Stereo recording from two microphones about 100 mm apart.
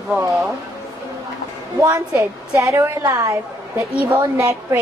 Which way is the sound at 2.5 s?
30° right (ahead or behind).